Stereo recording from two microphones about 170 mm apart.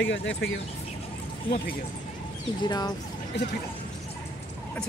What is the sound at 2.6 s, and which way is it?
Speech, 25° left (ahead or behind).